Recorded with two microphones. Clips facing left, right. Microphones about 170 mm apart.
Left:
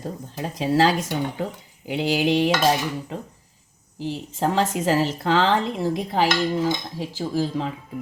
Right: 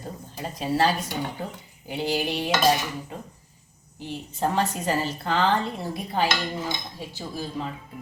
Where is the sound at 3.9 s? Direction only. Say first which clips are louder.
Left 5 dB; 90° left.